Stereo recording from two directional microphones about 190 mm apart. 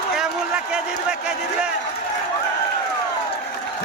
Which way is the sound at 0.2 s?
5° right (ahead or behind).